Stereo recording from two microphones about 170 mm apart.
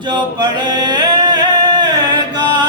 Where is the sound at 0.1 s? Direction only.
25° right (ahead or behind).